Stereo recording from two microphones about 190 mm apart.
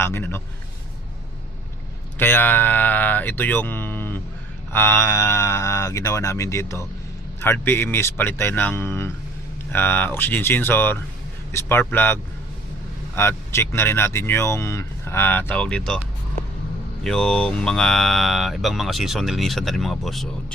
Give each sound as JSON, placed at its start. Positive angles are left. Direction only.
{"t": 0.0, "sound": "speech", "side_deg": 10}
{"t": 2.1, "sound": "speech", "side_deg": 10}
{"t": 17.0, "sound": "speech", "side_deg": 5}